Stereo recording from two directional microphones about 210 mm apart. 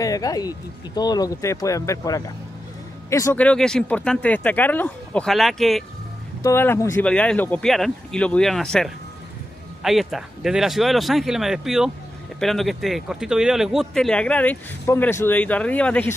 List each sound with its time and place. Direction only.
0.0 s speech: 15° left (ahead or behind)